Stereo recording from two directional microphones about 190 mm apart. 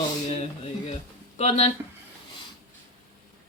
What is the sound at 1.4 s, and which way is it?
Speech, 35° left (ahead or behind).